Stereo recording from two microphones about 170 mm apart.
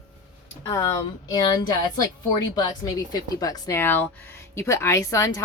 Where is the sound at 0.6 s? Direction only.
20° left (ahead or behind).